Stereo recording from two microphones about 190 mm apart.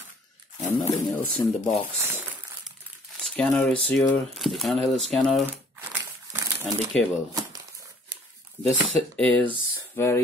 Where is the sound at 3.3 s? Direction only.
5° left (ahead or behind).